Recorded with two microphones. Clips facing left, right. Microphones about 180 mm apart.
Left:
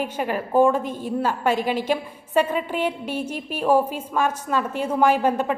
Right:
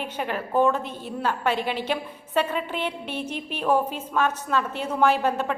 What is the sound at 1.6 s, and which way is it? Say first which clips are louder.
Speech: left 4 dB; 45° left (ahead or behind).